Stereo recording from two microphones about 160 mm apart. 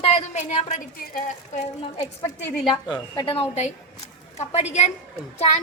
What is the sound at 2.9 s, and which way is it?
A woman's voice, 30° left (ahead or behind).